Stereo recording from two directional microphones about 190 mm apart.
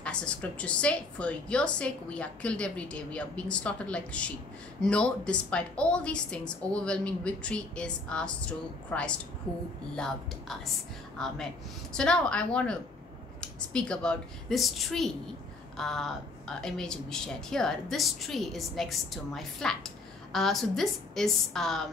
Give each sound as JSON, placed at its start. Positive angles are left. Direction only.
{"t": 0.0, "sound": "a woman's voice", "side_deg": 5}